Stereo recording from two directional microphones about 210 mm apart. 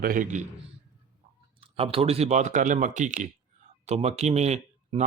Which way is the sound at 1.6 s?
25° right (ahead or behind).